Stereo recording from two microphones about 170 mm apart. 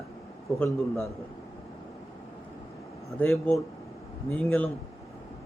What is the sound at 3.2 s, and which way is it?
A man's voice, 5° left (ahead or behind).